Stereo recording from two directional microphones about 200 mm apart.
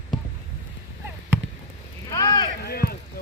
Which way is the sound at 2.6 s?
50° left (ahead or behind).